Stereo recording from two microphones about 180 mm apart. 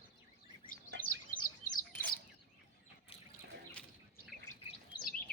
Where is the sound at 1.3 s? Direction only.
50° left (ahead or behind).